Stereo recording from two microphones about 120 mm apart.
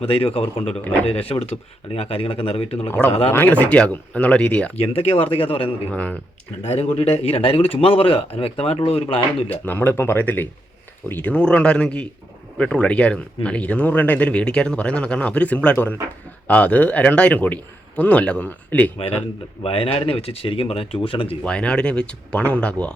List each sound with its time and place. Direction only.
0.0 s speech: 50° left (ahead or behind)
3.3 s speech: 15° left (ahead or behind)
4.8 s speech: 55° left (ahead or behind)
5.9 s speech: 10° left (ahead or behind)
6.7 s speech: 55° left (ahead or behind)
9.6 s speech: 15° left (ahead or behind)
18.9 s a man's voice: 55° left (ahead or behind)
21.4 s speech: 10° left (ahead or behind)